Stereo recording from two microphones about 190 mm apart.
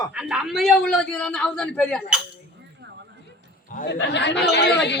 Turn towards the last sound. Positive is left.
turn(degrees=65)  # may be behind; listen again after turning